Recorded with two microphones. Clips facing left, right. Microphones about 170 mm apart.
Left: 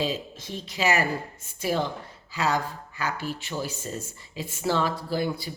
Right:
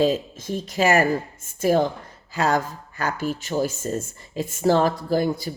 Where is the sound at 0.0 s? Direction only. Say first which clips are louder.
Right 8 dB; 50° right (ahead or behind).